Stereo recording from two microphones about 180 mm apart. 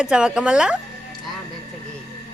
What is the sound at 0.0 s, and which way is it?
Speech, 5° right (ahead or behind).